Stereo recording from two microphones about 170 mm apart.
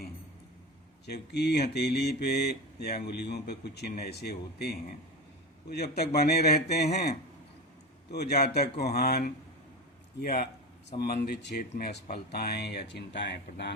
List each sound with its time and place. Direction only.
1.0 s mantra: 80° left
10.2 s a man's voice: 65° left (ahead or behind)
11.0 s mantra: 70° left (ahead or behind)
11.8 s speech: 80° left
12.1 s speech: 70° left (ahead or behind); by 13.7 s 90° left